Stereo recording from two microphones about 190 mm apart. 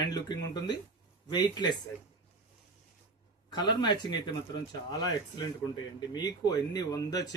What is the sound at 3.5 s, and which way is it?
Speech, 25° left (ahead or behind).